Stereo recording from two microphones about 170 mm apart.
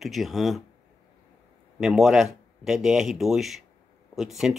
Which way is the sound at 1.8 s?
Centre (ahead or behind).